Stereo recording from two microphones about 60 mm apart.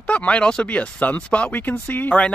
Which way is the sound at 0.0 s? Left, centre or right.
Left.